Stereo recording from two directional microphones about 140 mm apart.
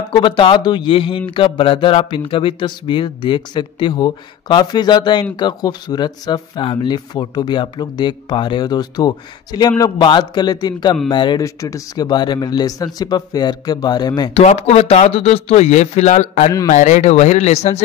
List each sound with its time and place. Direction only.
0.1 s a man's voice: 35° left (ahead or behind)
14.3 s speech: 45° left (ahead or behind)